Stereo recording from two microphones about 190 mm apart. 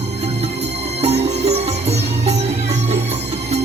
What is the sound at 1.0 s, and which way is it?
Music, 35° right (ahead or behind).